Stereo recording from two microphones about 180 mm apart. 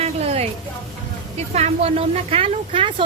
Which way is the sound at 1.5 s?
35° right (ahead or behind).